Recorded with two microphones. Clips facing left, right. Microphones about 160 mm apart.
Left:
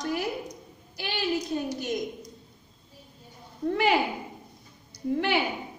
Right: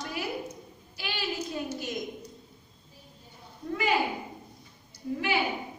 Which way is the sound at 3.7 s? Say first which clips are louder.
Left 4 dB; 65° left (ahead or behind).